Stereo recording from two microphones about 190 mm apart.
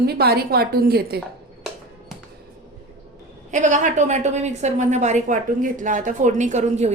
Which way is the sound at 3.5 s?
40° right (ahead or behind).